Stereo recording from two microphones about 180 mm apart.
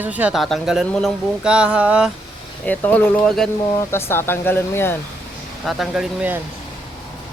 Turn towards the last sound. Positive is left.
turn(degrees=-5)  # may be behind; listen again after turning